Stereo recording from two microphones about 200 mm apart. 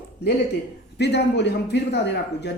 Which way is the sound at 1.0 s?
60° left (ahead or behind).